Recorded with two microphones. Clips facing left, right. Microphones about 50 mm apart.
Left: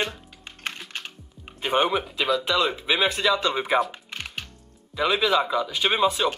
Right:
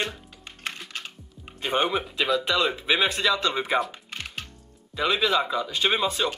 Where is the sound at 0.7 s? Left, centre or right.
Left.